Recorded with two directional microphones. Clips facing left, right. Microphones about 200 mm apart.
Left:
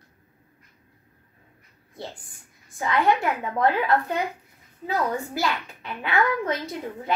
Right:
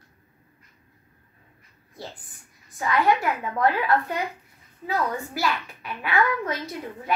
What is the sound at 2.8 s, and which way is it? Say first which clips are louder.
A child's voice: even; 20° left (ahead or behind).